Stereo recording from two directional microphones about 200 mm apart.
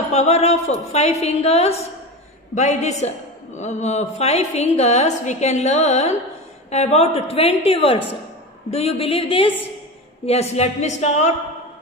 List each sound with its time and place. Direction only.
0.1 s a woman's voice: 35° left (ahead or behind)